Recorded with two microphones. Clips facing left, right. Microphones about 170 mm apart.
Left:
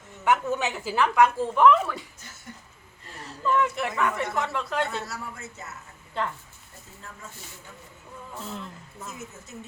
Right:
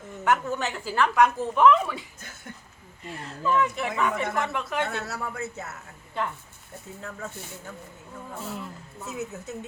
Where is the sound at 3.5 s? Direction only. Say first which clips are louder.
Even; 5° left (ahead or behind).